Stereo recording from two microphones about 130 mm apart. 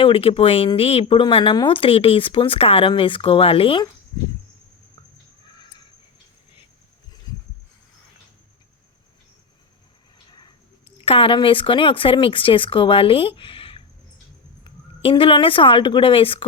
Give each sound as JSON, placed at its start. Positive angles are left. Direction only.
{"t": 0.0, "sound": "speech", "side_deg": 45}
{"t": 10.9, "sound": "speech", "side_deg": 45}
{"t": 15.1, "sound": "speech", "side_deg": 40}